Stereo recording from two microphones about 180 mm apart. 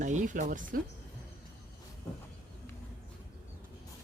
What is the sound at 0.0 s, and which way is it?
Speech, 45° right (ahead or behind).